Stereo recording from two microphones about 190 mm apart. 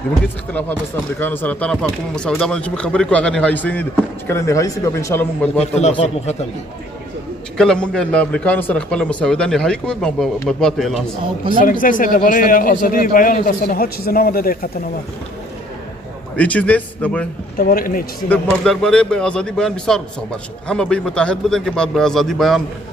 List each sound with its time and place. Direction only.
0.5 s a man's voice: 10° left (ahead or behind)
5.6 s speech: 35° left (ahead or behind)
7.5 s a man's voice: 5° left (ahead or behind)
11.5 s a man's voice: 45° left (ahead or behind)
16.3 s speech: 5° left (ahead or behind)
17.6 s a man's voice: 50° left (ahead or behind)
18.3 s a man's voice: 5° left (ahead or behind)